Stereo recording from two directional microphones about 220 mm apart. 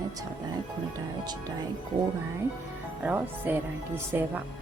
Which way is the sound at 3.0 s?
5° right (ahead or behind).